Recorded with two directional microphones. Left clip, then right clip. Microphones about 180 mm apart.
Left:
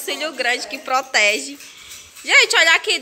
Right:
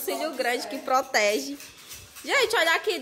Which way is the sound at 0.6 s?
20° right (ahead or behind).